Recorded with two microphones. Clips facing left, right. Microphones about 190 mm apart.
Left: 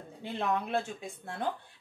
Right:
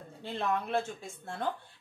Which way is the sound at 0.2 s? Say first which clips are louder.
Left 1 dB; 15° left (ahead or behind).